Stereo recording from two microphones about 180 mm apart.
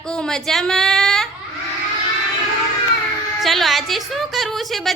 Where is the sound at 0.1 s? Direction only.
5° left (ahead or behind).